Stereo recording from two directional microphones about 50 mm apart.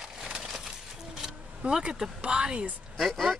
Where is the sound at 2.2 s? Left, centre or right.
Centre.